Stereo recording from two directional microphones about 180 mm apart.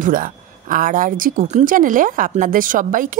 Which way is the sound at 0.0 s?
50° right (ahead or behind).